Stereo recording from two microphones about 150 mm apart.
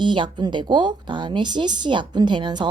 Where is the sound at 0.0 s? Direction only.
30° right (ahead or behind).